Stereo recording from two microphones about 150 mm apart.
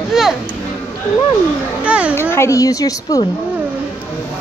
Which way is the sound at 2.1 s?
15° left (ahead or behind).